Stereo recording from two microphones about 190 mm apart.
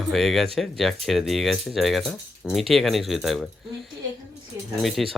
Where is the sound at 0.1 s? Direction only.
Centre (ahead or behind).